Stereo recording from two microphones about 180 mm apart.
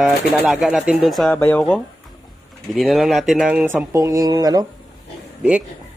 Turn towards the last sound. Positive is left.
turn(degrees=-5)  # may be behind; listen again after turning